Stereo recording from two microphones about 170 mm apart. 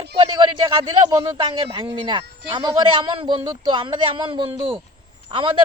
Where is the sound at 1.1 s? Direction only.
25° right (ahead or behind).